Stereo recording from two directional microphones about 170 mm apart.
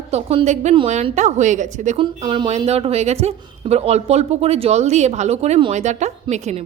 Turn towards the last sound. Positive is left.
turn(degrees=-40)  # may be behind; listen again after turning